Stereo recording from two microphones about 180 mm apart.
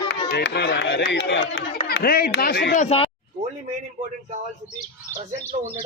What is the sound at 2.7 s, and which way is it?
Speech, 35° left (ahead or behind).